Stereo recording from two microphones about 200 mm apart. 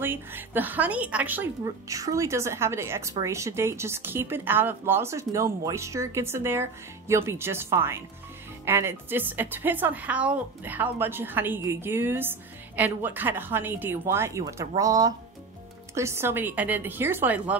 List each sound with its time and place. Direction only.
0.0 s a woman's voice: 10° right (ahead or behind)